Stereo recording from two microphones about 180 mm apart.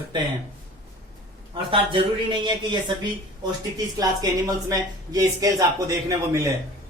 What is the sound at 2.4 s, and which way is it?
Speech, 25° right (ahead or behind).